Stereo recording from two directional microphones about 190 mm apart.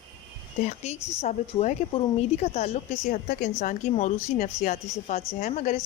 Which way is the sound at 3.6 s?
40° left (ahead or behind).